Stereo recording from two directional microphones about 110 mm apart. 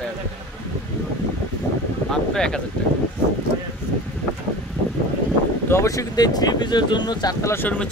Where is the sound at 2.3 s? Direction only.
5° left (ahead or behind).